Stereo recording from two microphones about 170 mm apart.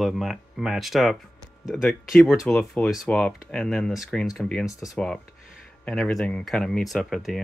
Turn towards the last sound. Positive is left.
turn(degrees=0)  # may be behind; listen again after turning